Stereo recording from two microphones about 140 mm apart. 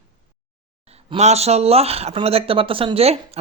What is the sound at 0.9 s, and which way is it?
Speech, 50° right (ahead or behind).